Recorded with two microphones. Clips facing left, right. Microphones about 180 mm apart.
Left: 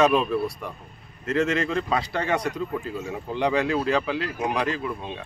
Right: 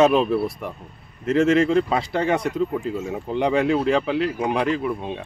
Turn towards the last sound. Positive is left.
turn(degrees=-25)  # may be behind; listen again after turning